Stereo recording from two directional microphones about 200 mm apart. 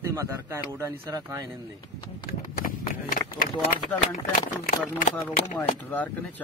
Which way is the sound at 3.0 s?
45° left (ahead or behind).